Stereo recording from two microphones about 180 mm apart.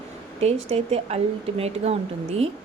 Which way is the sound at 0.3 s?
35° right (ahead or behind).